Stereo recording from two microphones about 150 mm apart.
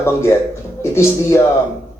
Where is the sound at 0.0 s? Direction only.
15° left (ahead or behind).